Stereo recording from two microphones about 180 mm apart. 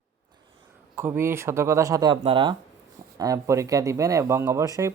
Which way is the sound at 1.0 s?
10° right (ahead or behind).